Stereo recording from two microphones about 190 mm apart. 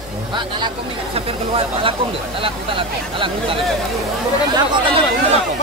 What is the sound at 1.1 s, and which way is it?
Speech, 30° right (ahead or behind).